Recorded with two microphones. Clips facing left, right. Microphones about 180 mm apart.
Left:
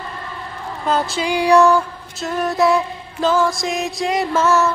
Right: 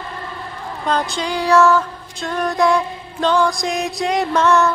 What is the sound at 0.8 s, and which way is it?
Music, 5° left (ahead or behind).